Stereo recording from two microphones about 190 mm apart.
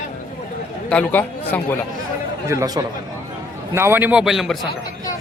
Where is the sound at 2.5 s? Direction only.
20° right (ahead or behind); by 4.5 s centre (ahead or behind).